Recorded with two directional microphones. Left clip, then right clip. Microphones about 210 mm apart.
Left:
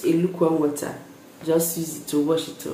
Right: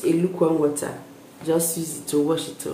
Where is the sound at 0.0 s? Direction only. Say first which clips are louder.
Even; centre (ahead or behind).